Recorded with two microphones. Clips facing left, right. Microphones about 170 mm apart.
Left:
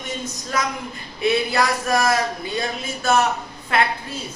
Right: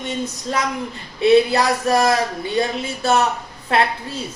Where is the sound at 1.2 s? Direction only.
35° right (ahead or behind).